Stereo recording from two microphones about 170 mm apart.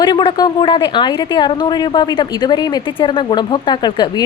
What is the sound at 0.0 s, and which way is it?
Speech, 25° left (ahead or behind).